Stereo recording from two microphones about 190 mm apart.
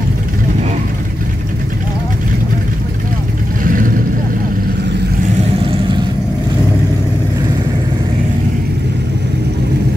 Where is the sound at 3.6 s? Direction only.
45° right (ahead or behind).